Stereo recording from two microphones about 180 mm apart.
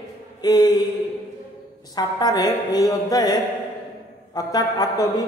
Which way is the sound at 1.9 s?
20° left (ahead or behind).